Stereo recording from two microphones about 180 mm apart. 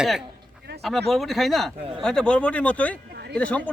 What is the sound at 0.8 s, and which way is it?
A man's voice, centre (ahead or behind).